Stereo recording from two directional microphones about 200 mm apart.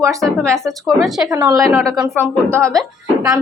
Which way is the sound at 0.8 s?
Centre (ahead or behind).